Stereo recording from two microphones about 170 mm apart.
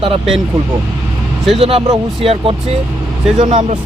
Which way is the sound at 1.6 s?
35° right (ahead or behind).